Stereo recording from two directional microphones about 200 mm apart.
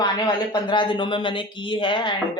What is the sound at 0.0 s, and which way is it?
Speech, 20° left (ahead or behind).